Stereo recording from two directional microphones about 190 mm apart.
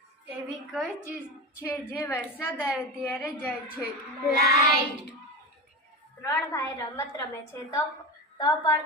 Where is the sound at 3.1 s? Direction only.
10° left (ahead or behind).